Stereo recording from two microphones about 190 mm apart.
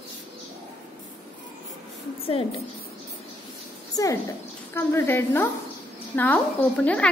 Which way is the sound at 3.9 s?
20° left (ahead or behind).